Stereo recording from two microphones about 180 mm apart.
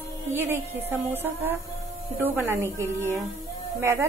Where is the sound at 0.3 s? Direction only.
15° right (ahead or behind).